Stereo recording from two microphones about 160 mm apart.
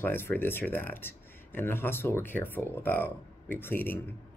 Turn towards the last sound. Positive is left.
turn(degrees=10)  # may be behind; listen again after turning